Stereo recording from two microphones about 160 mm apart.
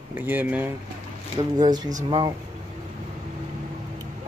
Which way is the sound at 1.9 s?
35° right (ahead or behind).